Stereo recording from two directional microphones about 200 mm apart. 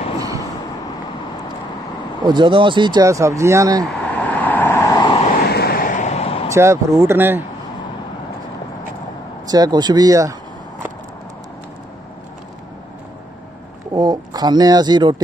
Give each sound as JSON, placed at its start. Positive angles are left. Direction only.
{"t": 2.2, "sound": "speech", "side_deg": -25}
{"t": 3.8, "sound": "vehicle", "side_deg": 5}
{"t": 5.4, "sound": "vehicle", "side_deg": 50}
{"t": 6.5, "sound": "speech", "side_deg": -15}
{"t": 9.5, "sound": "speech", "side_deg": -20}
{"t": 13.9, "sound": "speech", "side_deg": -20}